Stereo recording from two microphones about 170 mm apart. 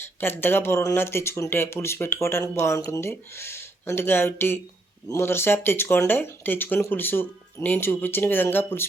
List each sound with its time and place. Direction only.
0.2 s speech: 15° left (ahead or behind)